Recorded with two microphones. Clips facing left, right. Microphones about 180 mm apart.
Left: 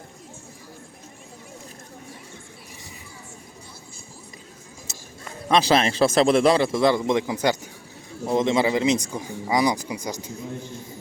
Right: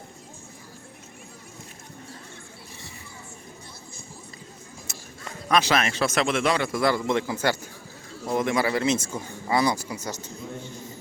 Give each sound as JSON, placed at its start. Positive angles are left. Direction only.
{"t": 5.5, "sound": "a man's voice", "side_deg": 30}